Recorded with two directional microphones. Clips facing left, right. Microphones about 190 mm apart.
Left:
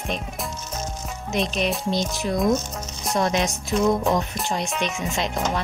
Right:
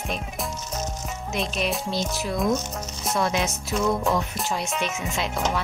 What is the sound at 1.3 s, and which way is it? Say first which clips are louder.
Music: left 3 dB; centre (ahead or behind).